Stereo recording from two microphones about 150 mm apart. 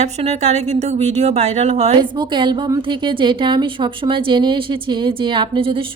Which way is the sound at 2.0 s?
30° right (ahead or behind).